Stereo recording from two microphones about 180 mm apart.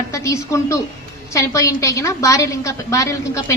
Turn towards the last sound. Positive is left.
turn(degrees=15)  # may be behind; listen again after turning